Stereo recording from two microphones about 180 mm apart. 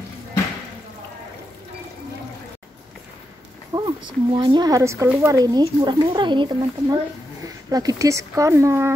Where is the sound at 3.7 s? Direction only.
25° right (ahead or behind).